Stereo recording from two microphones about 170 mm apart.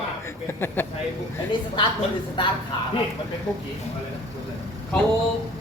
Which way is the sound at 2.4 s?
30° left (ahead or behind).